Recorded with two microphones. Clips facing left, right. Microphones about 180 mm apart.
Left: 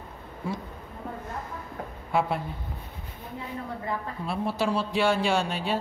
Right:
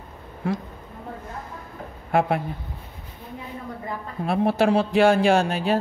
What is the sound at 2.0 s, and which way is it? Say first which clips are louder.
Speech: right 5 dB; 60° right (ahead or behind).